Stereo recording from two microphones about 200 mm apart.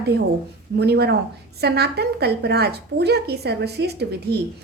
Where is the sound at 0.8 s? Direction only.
55° right (ahead or behind).